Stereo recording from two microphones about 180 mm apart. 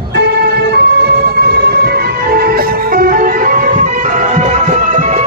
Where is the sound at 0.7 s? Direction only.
65° right (ahead or behind).